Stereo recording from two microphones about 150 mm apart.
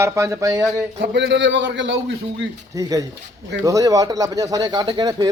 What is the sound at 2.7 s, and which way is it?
Speech, 20° right (ahead or behind).